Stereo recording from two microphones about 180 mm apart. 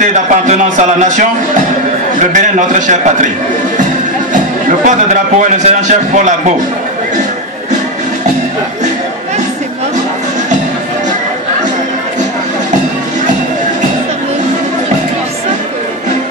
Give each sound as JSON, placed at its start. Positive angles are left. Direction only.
{"t": 0.0, "sound": "speech", "side_deg": -40}
{"t": 2.3, "sound": "a man's voice", "side_deg": -45}
{"t": 4.6, "sound": "a man's voice", "side_deg": -45}